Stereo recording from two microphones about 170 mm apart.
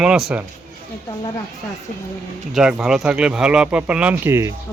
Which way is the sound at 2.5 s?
5° right (ahead or behind).